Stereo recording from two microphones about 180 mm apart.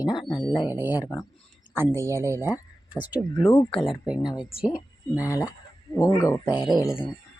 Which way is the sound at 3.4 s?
20° left (ahead or behind).